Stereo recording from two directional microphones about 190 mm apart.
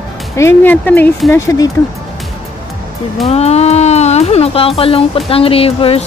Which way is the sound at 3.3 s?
35° left (ahead or behind).